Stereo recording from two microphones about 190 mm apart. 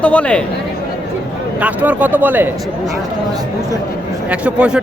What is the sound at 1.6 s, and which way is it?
Speech, 10° right (ahead or behind).